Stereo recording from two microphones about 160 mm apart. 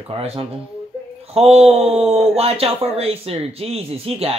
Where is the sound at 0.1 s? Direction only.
40° right (ahead or behind).